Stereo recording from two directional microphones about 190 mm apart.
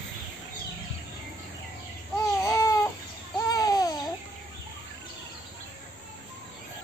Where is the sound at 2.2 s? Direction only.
15° left (ahead or behind).